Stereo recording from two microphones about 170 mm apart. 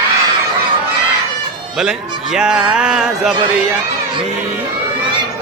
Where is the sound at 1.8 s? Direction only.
5° right (ahead or behind).